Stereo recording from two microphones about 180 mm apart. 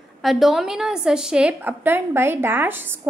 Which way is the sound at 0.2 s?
Centre (ahead or behind).